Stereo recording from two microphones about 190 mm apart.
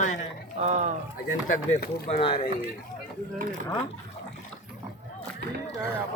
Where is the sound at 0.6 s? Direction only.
40° right (ahead or behind).